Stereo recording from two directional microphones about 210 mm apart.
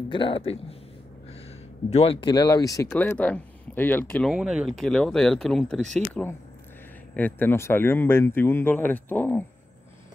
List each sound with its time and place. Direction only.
0.1 s speech: 25° left (ahead or behind)
1.9 s speech: 30° left (ahead or behind); by 4.3 s 10° left (ahead or behind)
4.3 s speech: centre (ahead or behind)
7.2 s speech: 10° left (ahead or behind)